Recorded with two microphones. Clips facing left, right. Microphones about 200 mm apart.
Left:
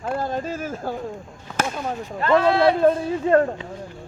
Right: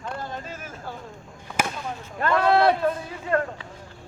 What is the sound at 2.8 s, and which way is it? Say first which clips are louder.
Speech: left 8 dB; 30° left (ahead or behind).